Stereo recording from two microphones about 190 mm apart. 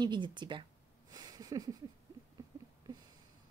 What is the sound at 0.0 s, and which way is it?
Speech, 25° right (ahead or behind).